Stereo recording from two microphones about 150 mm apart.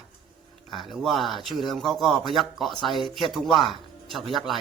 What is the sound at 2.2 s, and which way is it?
Speech, 30° left (ahead or behind).